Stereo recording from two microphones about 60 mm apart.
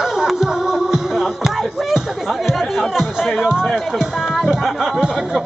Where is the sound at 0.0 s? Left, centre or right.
Centre.